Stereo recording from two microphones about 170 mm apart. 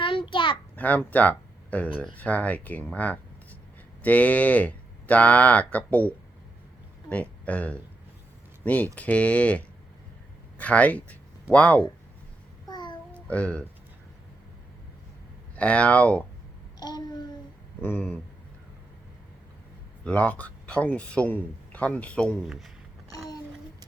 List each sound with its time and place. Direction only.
0.0 s a sound: 30° left (ahead or behind)
0.8 s a man's voice: 10° left (ahead or behind)
12.6 s babbling: 25° left (ahead or behind)
13.1 s speech: 10° left (ahead or behind)
15.5 s a man's voice: 5° left (ahead or behind)
16.8 s child singing: 25° left (ahead or behind)
17.8 s a man's voice: 10° left (ahead or behind)
20.1 s a man's voice: 5° left (ahead or behind)